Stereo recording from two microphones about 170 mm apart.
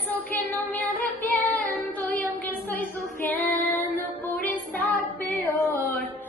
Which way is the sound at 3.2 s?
10° left (ahead or behind).